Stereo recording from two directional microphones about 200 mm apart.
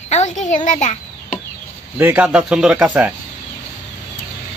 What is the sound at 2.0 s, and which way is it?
Speech, 10° right (ahead or behind).